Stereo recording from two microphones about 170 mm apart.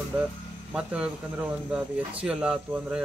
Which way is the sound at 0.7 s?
5° right (ahead or behind).